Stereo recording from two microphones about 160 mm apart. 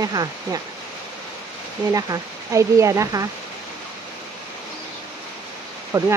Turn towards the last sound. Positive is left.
turn(degrees=-10)  # may be behind; listen again after turning